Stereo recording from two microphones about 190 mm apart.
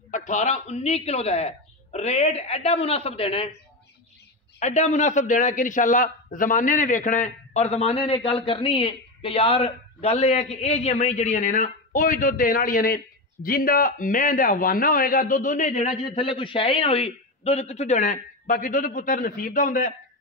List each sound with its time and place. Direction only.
0.1 s a man's voice: 40° left (ahead or behind)
4.6 s a man's voice: 35° left (ahead or behind)